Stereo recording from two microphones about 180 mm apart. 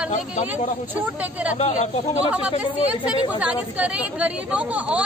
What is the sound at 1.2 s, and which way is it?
Speech, 10° right (ahead or behind).